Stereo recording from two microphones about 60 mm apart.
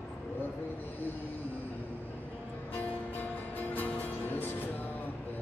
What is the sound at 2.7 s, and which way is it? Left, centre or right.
Music, left.